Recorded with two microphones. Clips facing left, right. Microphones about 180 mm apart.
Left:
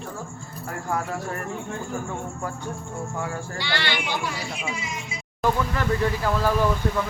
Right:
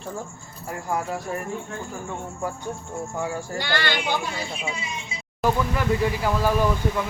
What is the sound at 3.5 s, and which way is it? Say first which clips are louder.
Speech: right 2 dB; 45° right (ahead or behind).